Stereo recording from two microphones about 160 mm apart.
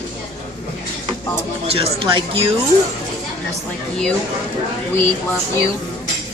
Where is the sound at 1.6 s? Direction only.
35° right (ahead or behind).